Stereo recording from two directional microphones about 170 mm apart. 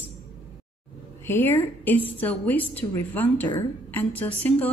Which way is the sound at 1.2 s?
10° left (ahead or behind).